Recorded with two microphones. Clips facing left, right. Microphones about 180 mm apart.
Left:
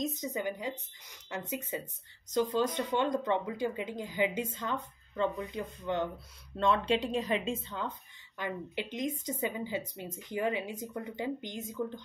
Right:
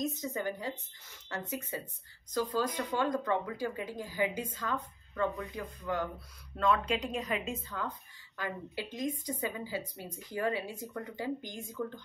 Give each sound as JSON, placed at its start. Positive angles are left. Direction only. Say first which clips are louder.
{"t": 0.0, "sound": "speech", "louder": "even", "side_deg": 15}